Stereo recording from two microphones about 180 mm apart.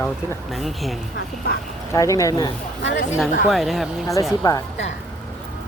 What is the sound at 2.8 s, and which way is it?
Speech, 85° left.